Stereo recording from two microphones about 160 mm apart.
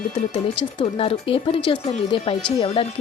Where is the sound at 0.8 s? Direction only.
35° left (ahead or behind).